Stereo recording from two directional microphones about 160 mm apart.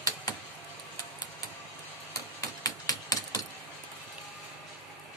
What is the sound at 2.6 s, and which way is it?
Mechanisms, 20° left (ahead or behind).